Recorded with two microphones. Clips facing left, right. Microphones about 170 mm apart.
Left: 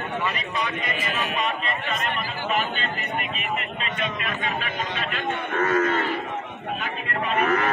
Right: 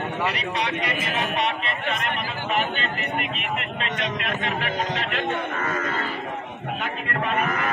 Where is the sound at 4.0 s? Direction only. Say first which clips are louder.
Even; 70° right (ahead or behind).